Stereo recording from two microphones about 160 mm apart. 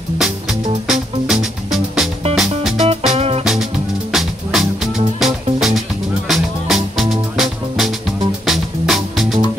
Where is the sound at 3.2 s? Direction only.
40° right (ahead or behind).